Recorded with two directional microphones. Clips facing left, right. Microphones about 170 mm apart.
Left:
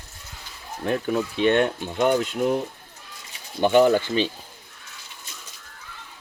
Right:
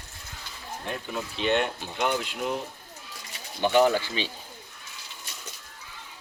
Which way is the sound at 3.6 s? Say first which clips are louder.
Left 4 dB; 50° left (ahead or behind).